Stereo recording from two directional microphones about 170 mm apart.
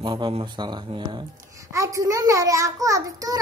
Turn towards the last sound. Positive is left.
turn(degrees=-20)  # may be behind; listen again after turning